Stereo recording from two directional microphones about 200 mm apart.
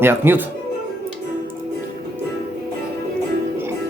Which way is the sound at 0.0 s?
10° right (ahead or behind).